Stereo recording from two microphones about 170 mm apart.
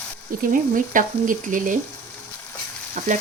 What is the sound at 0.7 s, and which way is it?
Frying, 50° right (ahead or behind).